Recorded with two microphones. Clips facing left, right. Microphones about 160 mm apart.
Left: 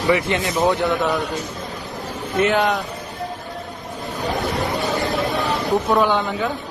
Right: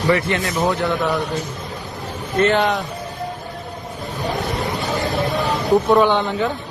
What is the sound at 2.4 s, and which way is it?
Speech, 5° left (ahead or behind).